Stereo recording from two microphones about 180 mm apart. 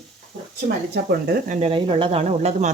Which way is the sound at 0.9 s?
60° right (ahead or behind).